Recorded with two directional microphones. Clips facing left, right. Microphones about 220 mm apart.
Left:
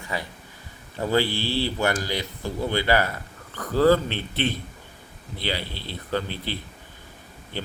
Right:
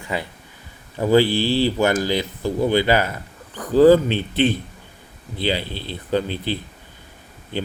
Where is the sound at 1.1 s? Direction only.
15° right (ahead or behind).